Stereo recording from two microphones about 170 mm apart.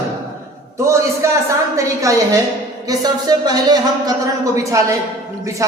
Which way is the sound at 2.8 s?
20° right (ahead or behind).